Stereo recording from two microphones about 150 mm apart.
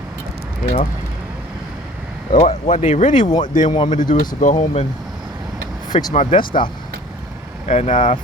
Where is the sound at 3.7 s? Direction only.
30° left (ahead or behind).